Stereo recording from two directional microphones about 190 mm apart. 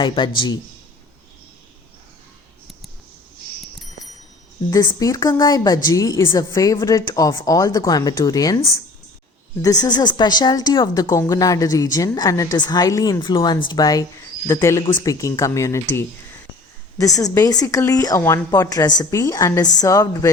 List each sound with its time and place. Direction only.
0.0 s a woman's voice: 25° left (ahead or behind)
4.7 s a woman's voice: 20° left (ahead or behind)
17.0 s speech: 20° left (ahead or behind)